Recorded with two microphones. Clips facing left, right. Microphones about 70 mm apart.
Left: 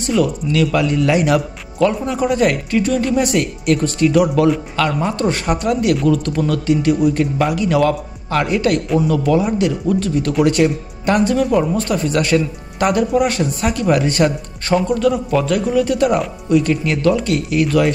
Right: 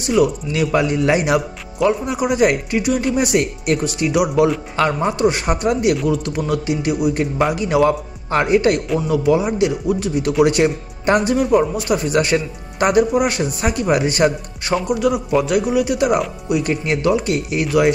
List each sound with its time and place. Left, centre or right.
0.0 s speech: centre
4.7 s a man's voice: right